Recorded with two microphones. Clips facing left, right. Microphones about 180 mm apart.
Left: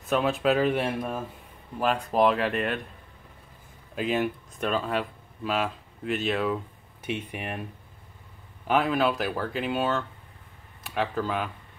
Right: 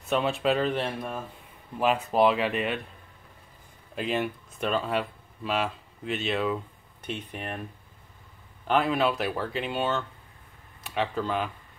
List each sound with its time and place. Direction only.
0.0 s speech: centre (ahead or behind)
1.8 s speech: 5° right (ahead or behind)
3.9 s speech: centre (ahead or behind)
8.6 s speech: centre (ahead or behind)